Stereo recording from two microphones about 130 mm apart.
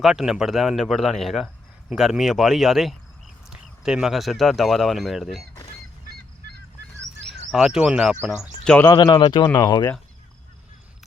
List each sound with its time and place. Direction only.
0.0 s speech: 5° right (ahead or behind)
7.3 s speech: 5° right (ahead or behind)
8.6 s speech: 10° left (ahead or behind)
8.9 s speech: 35° left (ahead or behind)